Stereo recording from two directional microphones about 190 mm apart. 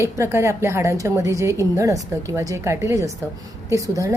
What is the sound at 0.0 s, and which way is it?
A woman's voice, 15° right (ahead or behind).